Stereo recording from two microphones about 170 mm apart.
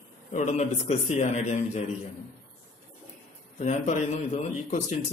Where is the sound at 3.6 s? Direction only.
45° left (ahead or behind).